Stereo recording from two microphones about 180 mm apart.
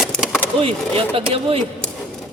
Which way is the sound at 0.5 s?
30° right (ahead or behind).